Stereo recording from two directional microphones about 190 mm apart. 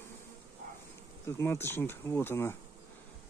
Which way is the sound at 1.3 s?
15° left (ahead or behind).